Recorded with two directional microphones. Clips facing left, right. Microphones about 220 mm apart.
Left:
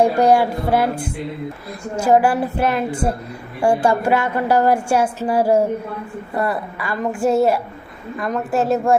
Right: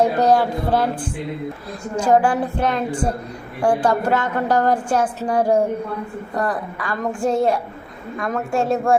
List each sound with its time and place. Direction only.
0.0 s a woman's voice: 10° left (ahead or behind)